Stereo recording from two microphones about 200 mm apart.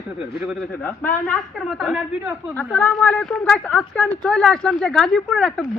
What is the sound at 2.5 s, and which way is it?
A woman's voice, 10° left (ahead or behind).